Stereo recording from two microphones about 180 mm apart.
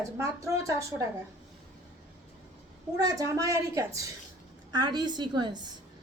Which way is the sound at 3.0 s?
20° right (ahead or behind).